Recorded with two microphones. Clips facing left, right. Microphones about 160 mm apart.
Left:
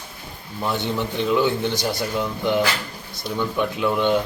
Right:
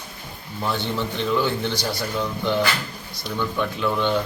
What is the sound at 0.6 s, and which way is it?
Speech, 15° left (ahead or behind).